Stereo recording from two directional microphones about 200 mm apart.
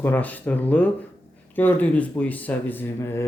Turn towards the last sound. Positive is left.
turn(degrees=10)  # may be behind; listen again after turning